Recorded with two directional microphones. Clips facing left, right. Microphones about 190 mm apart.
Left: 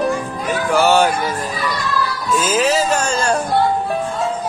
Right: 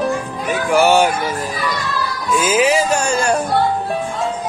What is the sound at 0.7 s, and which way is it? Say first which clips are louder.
Music: right 1 dB; 10° right (ahead or behind).